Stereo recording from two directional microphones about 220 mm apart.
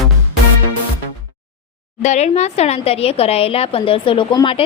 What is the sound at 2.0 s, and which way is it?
Speech, 30° left (ahead or behind).